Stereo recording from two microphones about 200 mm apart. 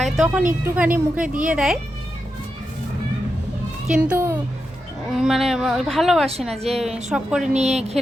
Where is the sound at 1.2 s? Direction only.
40° right (ahead or behind).